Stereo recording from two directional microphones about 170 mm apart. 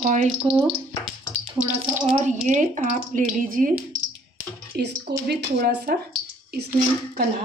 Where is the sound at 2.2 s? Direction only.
45° right (ahead or behind).